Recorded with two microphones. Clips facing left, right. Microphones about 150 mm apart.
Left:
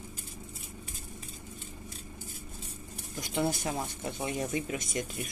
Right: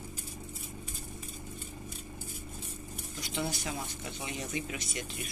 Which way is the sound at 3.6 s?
50° left (ahead or behind).